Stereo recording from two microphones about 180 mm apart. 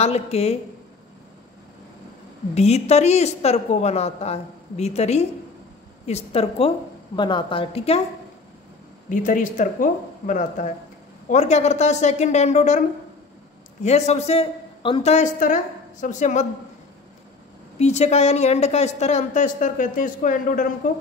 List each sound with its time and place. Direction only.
0.0 s speech: 35° left (ahead or behind)
2.5 s speech: 35° left (ahead or behind)
9.1 s speech: 45° left (ahead or behind)
13.8 s speech: 40° left (ahead or behind)
17.7 s speech: 35° left (ahead or behind)